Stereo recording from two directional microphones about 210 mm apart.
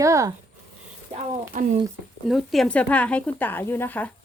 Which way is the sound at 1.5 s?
35° right (ahead or behind).